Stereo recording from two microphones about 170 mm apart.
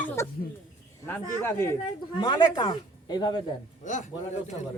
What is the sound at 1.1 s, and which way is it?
Speech, 15° left (ahead or behind).